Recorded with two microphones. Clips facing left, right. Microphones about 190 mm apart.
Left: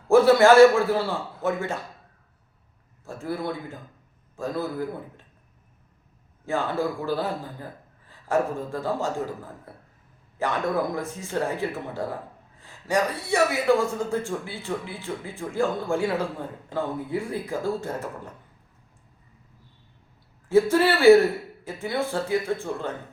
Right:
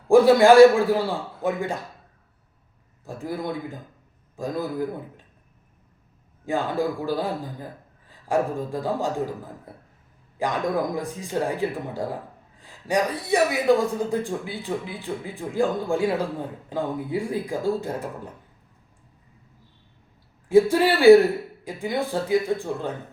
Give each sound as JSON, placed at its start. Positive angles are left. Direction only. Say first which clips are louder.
{"t": 0.1, "sound": "speech", "louder": "right 2 dB", "side_deg": -15}
{"t": 3.0, "sound": "speech", "louder": "even", "side_deg": -15}
{"t": 6.4, "sound": "speech", "louder": "right 1 dB", "side_deg": -15}
{"t": 12.5, "sound": "a sound", "louder": "right 1 dB", "side_deg": -15}
{"t": 13.3, "sound": "speech", "louder": "right 2 dB", "side_deg": -15}
{"t": 20.5, "sound": "speech", "louder": "right 2 dB", "side_deg": -15}